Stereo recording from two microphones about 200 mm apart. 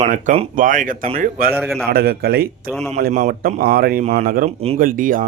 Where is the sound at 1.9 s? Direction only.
50° right (ahead or behind).